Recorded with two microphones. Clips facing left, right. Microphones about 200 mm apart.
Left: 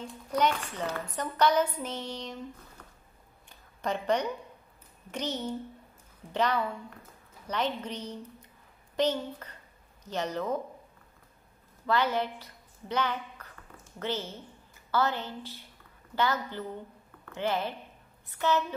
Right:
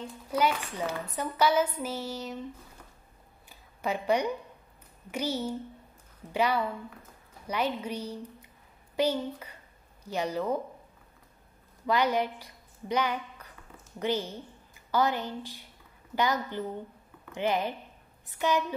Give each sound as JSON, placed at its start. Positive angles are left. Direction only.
{"t": 0.0, "sound": "a woman's voice", "side_deg": -5}
{"t": 3.4, "sound": "a sound", "side_deg": -5}
{"t": 5.1, "sound": "a woman's voice", "side_deg": -10}
{"t": 11.8, "sound": "a woman's voice", "side_deg": -15}